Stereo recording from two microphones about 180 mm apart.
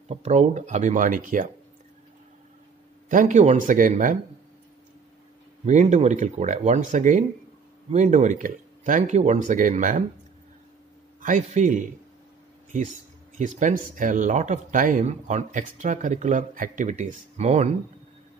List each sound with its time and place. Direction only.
0.1 s speech: 40° right (ahead or behind)
3.1 s speech: 45° right (ahead or behind)
5.7 s speech: 40° right (ahead or behind)
11.1 s speech: 45° right (ahead or behind)
13.4 s speech: 45° right (ahead or behind)